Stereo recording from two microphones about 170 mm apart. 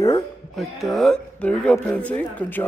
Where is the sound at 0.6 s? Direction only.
Centre (ahead or behind).